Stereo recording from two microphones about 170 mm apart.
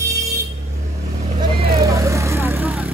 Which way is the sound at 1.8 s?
15° right (ahead or behind).